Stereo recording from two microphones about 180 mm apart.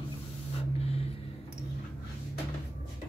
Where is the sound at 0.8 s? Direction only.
35° left (ahead or behind).